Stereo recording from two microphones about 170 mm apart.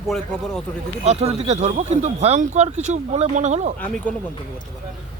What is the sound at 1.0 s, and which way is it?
Speech, 35° right (ahead or behind).